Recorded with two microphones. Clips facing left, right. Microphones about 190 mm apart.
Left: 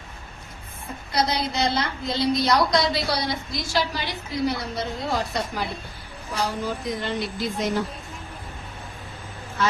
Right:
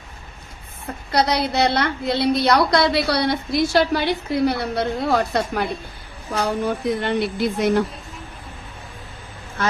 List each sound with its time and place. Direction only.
1.1 s a woman's voice: 65° right (ahead or behind)